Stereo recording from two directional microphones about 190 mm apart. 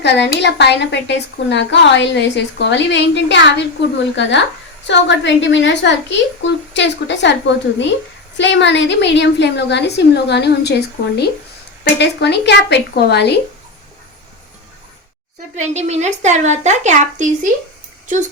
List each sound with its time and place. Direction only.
0.0 s a woman's voice: 65° left (ahead or behind)
15.5 s a woman's voice: 35° right (ahead or behind)